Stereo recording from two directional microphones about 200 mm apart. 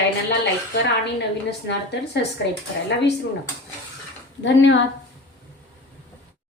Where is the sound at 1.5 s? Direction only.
60° left (ahead or behind).